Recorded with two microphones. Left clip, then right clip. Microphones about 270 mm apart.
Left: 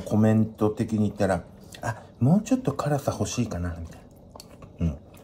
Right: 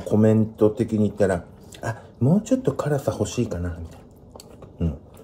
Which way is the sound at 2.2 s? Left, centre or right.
Left.